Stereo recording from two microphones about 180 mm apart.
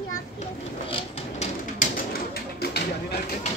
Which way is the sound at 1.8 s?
55° left (ahead or behind).